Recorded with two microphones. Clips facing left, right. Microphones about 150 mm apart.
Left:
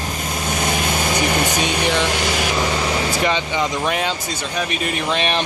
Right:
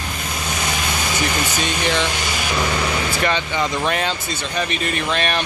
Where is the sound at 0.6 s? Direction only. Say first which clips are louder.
Left 4 dB; 50° left (ahead or behind).